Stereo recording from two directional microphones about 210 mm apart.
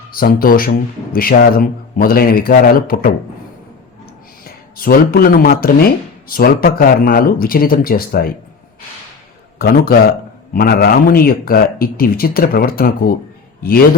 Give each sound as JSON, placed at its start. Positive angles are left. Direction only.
{"t": 0.1, "sound": "a man's voice", "side_deg": 45}
{"t": 4.4, "sound": "a man's voice", "side_deg": 45}
{"t": 9.6, "sound": "a man's voice", "side_deg": 45}